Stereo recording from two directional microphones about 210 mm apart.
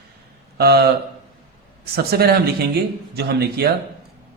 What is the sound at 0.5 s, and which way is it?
Speech, 50° right (ahead or behind).